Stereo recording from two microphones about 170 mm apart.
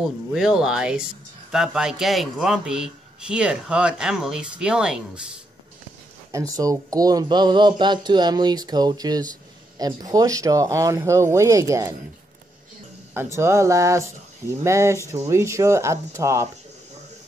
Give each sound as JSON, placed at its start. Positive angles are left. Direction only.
{"t": 0.0, "sound": "speech", "side_deg": 0}
{"t": 6.3, "sound": "speech", "side_deg": -20}
{"t": 13.1, "sound": "speech", "side_deg": -15}